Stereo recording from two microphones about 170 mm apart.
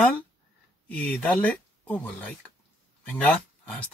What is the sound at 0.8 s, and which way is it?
Speech, 10° left (ahead or behind).